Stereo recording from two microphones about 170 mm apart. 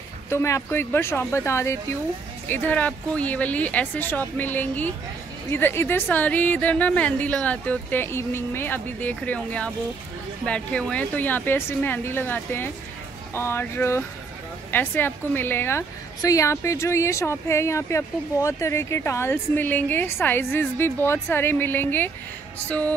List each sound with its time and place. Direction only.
0.3 s a woman's voice: 15° left (ahead or behind)